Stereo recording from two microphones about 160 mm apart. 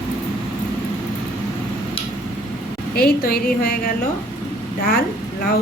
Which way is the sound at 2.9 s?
70° left (ahead or behind).